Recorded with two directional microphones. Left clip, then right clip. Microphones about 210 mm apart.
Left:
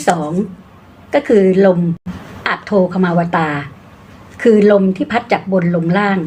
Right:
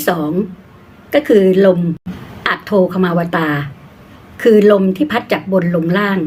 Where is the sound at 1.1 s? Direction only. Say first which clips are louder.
Right 1 dB; 25° right (ahead or behind).